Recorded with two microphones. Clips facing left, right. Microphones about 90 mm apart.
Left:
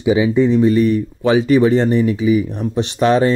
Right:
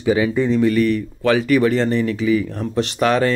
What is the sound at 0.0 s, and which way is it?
Speech, 15° left (ahead or behind).